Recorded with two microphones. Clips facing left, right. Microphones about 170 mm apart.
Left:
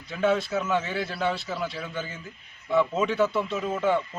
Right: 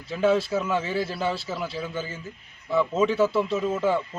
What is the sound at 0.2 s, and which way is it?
Speech, 30° right (ahead or behind).